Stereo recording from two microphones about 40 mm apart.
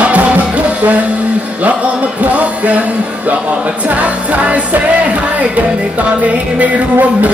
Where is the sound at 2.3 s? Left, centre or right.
Right.